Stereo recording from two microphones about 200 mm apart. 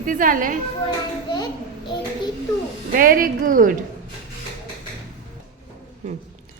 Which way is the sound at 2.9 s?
45° right (ahead or behind).